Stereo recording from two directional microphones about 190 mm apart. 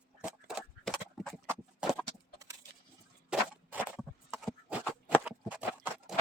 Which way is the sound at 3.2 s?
10° right (ahead or behind).